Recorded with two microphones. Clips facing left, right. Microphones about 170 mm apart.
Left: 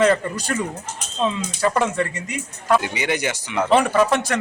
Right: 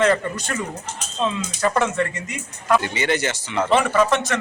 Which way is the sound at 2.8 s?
10° left (ahead or behind).